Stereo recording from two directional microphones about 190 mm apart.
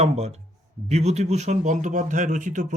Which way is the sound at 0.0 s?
35° right (ahead or behind).